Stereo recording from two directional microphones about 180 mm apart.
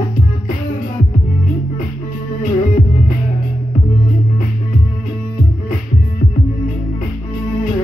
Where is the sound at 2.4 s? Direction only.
50° left (ahead or behind).